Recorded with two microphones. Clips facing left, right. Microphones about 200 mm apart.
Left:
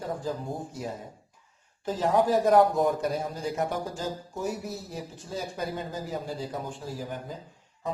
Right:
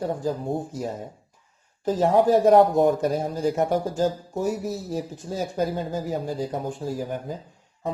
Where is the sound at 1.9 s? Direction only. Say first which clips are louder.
Right 5 dB; 40° right (ahead or behind).